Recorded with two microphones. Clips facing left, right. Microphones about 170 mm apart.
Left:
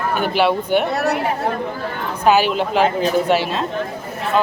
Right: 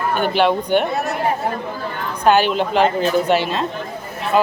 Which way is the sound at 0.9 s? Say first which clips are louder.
Left 3 dB; 70° left (ahead or behind).